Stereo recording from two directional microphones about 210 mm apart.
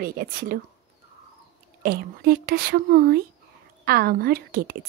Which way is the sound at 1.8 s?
50° right (ahead or behind).